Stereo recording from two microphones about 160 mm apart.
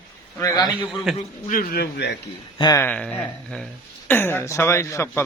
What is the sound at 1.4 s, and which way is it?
Speech, 60° left (ahead or behind).